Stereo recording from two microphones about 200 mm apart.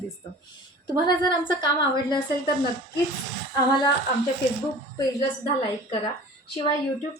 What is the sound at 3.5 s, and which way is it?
Speech, 20° left (ahead or behind).